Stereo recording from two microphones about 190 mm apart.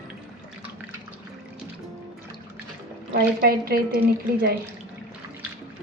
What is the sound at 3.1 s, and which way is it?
Speech, 55° right (ahead or behind).